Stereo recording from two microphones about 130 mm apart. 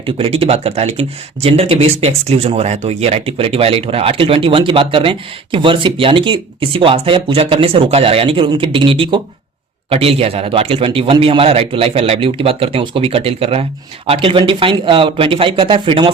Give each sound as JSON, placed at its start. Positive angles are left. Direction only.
{"t": 0.0, "sound": "speech", "side_deg": -45}